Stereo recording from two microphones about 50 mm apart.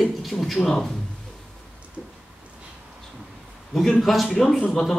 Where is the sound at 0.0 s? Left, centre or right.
Centre.